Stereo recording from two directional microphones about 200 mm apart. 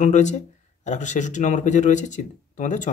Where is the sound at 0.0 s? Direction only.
35° left (ahead or behind).